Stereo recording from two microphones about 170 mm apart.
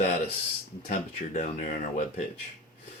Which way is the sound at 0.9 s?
45° left (ahead or behind).